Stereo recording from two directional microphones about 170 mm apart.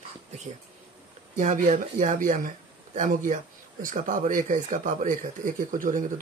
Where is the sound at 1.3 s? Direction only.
50° right (ahead or behind).